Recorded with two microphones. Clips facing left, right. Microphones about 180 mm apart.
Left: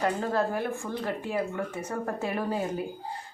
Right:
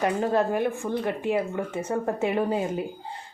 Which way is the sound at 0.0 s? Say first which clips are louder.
Right 4 dB; 20° right (ahead or behind).